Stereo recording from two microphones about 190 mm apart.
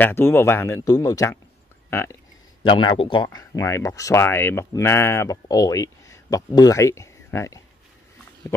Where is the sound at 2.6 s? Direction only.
25° left (ahead or behind).